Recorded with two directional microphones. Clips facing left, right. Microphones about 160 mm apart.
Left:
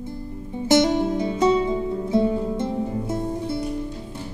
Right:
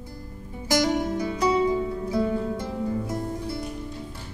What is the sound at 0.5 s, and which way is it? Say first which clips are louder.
Music: left 5 dB; 25° left (ahead or behind).